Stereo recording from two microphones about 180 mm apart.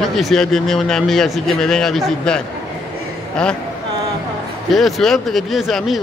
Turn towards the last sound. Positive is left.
turn(degrees=0)  # may be behind; listen again after turning